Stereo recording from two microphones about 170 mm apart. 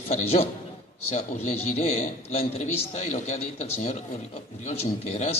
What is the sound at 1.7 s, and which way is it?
A man's voice, 40° left (ahead or behind).